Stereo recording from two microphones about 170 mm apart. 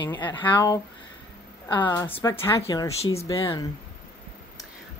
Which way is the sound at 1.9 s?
15° left (ahead or behind).